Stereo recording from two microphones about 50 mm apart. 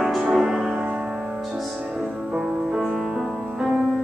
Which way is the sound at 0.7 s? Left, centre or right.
Centre.